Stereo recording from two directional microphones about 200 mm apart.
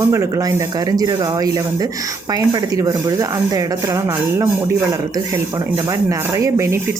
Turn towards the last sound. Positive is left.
turn(degrees=-15)  # may be behind; listen again after turning